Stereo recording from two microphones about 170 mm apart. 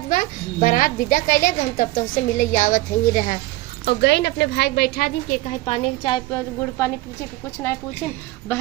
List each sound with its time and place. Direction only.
0.1 s a woman's voice: 55° left (ahead or behind)
3.8 s a woman's voice: 80° left; by 5.5 s 60° left (ahead or behind)
5.6 s a woman's voice: 35° left (ahead or behind)
6.3 s a woman's voice: 15° left (ahead or behind)